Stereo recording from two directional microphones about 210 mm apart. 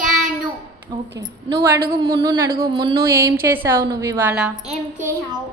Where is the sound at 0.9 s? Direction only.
25° right (ahead or behind); by 4.5 s 10° right (ahead or behind).